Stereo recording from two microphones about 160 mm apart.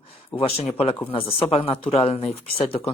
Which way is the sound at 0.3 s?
25° left (ahead or behind).